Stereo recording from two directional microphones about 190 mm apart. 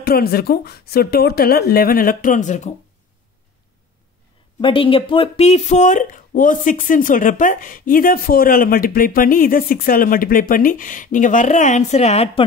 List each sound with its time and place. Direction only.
0.0 s speech: 55° left (ahead or behind)
4.6 s speech: 25° left (ahead or behind)